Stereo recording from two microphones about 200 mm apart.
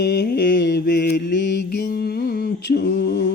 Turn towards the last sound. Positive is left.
turn(degrees=50)  # may be behind; listen again after turning